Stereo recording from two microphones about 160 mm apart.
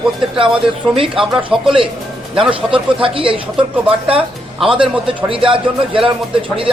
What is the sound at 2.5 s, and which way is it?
Speech, 35° right (ahead or behind).